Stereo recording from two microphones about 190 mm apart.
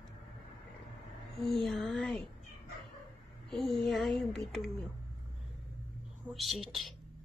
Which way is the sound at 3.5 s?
Centre (ahead or behind).